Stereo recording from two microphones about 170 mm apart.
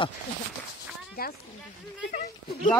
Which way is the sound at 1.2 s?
60° left (ahead or behind).